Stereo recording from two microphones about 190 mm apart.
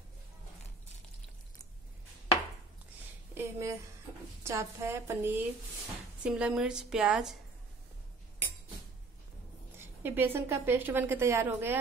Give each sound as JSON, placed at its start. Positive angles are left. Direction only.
{"t": 3.3, "sound": "a woman's voice", "side_deg": -15}
{"t": 9.8, "sound": "a woman's voice", "side_deg": -10}